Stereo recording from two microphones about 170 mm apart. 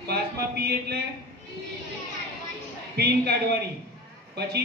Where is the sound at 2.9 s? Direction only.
70° right (ahead or behind).